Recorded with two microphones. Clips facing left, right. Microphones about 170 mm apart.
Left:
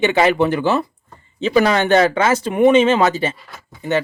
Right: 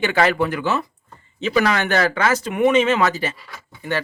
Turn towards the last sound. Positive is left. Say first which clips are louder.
# left 5 dB
turn(degrees=25)  # may be behind; listen again after turning